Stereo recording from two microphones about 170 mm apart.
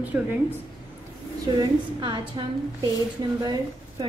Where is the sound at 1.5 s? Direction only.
25° right (ahead or behind).